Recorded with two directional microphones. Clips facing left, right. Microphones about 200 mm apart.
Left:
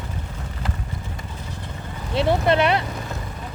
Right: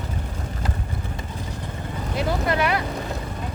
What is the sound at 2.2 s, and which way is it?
Clip-clop, 25° left (ahead or behind).